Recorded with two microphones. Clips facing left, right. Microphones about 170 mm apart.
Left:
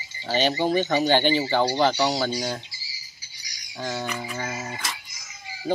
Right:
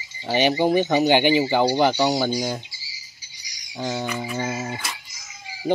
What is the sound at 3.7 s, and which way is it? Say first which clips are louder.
Speech: right 3 dB; 15° right (ahead or behind).